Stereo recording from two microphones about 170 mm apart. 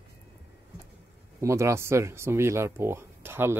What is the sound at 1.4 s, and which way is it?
Speech, 15° right (ahead or behind).